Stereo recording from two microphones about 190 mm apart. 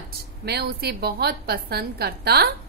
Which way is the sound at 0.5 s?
60° right (ahead or behind).